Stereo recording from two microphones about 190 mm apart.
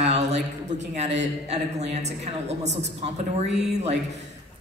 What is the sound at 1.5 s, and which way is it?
A woman's voice, 35° right (ahead or behind).